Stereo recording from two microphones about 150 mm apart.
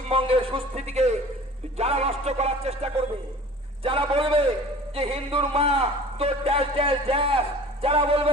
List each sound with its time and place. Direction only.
0.1 s a man's voice: 35° right (ahead or behind)